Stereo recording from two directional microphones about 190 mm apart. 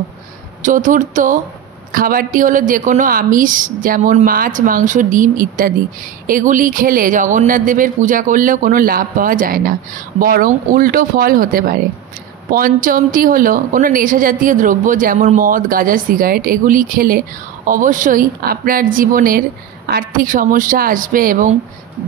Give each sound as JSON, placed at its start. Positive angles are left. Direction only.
{"t": 0.6, "sound": "speech", "side_deg": -45}